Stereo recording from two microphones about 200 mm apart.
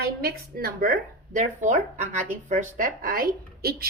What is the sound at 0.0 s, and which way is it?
A woman's voice, 50° right (ahead or behind).